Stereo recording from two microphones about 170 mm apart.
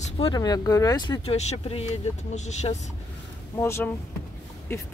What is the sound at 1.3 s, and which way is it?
Speech, 40° left (ahead or behind).